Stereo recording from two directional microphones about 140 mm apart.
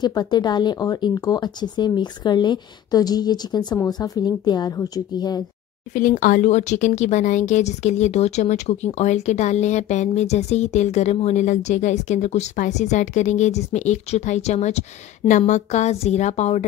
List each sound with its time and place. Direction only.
0.0 s speech: 30° left (ahead or behind)
5.9 s speech: 65° left (ahead or behind)